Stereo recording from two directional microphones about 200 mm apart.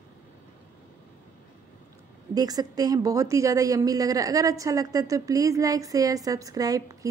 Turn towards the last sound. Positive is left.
turn(degrees=-15)  # may be behind; listen again after turning